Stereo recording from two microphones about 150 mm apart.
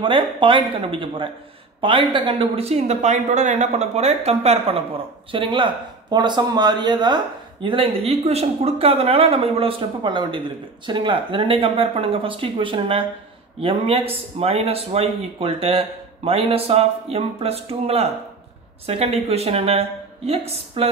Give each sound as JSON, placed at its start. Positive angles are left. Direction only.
{"t": 0.0, "sound": "speech", "side_deg": -35}